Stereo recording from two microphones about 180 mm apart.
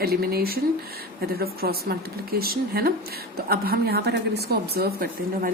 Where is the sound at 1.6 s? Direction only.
60° right (ahead or behind).